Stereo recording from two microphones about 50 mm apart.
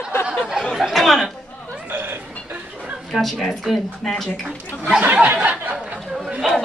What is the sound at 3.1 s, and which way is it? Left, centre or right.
Speech, centre.